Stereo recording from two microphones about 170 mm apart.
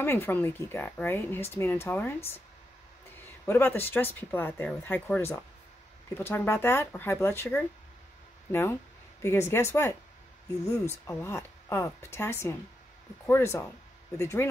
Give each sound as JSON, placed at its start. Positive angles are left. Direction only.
{"t": 0.0, "sound": "speech", "side_deg": 15}
{"t": 3.4, "sound": "speech", "side_deg": 15}